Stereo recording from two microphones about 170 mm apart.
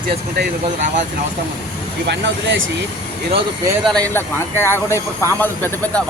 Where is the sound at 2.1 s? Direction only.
90° right.